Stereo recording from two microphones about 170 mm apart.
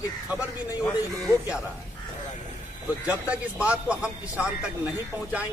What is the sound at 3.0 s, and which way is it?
Speech, 10° right (ahead or behind).